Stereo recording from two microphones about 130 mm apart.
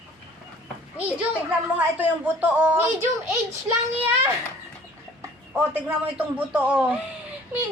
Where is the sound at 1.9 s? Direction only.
15° right (ahead or behind).